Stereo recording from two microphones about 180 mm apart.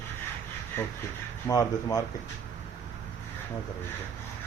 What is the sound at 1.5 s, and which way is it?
Speech, 20° left (ahead or behind).